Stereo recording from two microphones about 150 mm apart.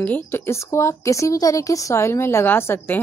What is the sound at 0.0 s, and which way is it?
A woman's voice, 15° left (ahead or behind).